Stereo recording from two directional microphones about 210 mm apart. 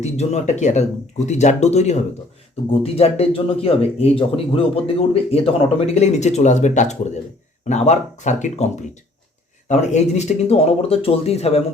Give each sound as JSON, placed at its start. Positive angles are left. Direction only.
{"t": 0.0, "sound": "speech", "side_deg": 30}